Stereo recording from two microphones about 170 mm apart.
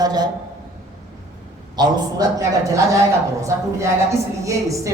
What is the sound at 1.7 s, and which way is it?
Speech, 25° right (ahead or behind).